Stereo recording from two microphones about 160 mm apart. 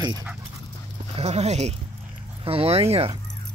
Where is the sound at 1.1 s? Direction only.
45° right (ahead or behind).